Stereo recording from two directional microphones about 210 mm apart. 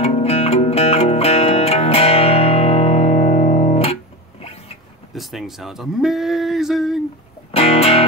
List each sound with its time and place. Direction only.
0.0 s music: 30° left (ahead or behind)
5.1 s speech: centre (ahead or behind)
7.5 s music: 30° left (ahead or behind)